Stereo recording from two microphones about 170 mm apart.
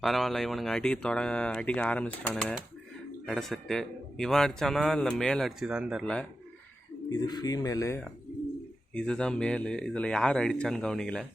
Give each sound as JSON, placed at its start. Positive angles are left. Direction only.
{"t": 0.0, "sound": "a man's voice", "side_deg": 0}
{"t": 7.3, "sound": "speech", "side_deg": 25}
{"t": 8.9, "sound": "a man's voice", "side_deg": 5}